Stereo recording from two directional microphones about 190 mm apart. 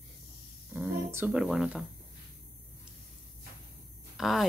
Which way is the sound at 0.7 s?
10° right (ahead or behind).